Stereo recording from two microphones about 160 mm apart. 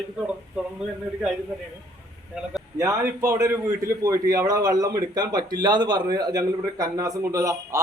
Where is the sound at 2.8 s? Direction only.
20° right (ahead or behind).